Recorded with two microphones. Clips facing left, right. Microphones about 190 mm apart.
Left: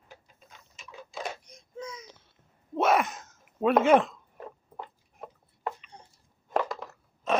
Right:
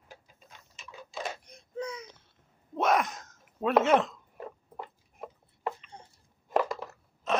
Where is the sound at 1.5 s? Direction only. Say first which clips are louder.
Right 4 dB; 60° right (ahead or behind).